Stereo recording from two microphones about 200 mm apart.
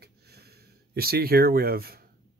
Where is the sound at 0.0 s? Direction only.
55° right (ahead or behind).